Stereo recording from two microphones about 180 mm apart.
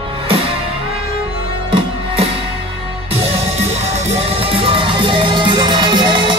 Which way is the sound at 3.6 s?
40° right (ahead or behind).